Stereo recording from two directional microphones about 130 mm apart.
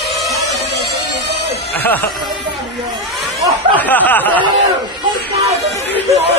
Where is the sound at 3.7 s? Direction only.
15° left (ahead or behind).